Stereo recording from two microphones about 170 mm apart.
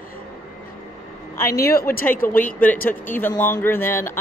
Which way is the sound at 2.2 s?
15° left (ahead or behind).